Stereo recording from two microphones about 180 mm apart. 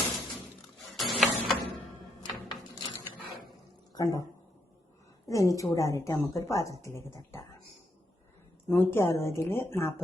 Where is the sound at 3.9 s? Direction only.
20° left (ahead or behind).